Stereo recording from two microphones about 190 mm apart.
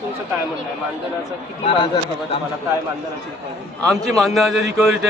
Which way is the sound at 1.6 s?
30° left (ahead or behind).